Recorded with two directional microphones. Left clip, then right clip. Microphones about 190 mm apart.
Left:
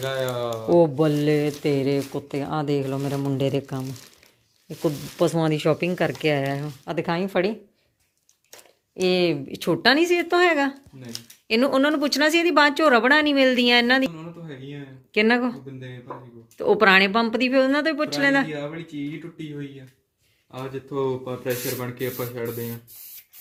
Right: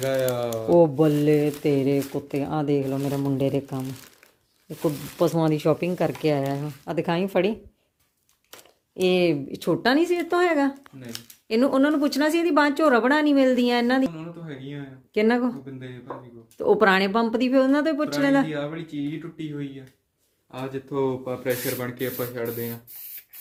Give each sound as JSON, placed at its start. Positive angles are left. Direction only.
{"t": 0.0, "sound": "speech", "side_deg": -55}
{"t": 0.7, "sound": "speech", "side_deg": -10}
{"t": 9.0, "sound": "speech", "side_deg": -15}
{"t": 9.6, "sound": "speech", "side_deg": 0}
{"t": 16.6, "sound": "speech", "side_deg": -10}
{"t": 20.5, "sound": "speech", "side_deg": 10}
{"t": 21.5, "sound": "speech", "side_deg": -10}
{"t": 21.8, "sound": "speech", "side_deg": 10}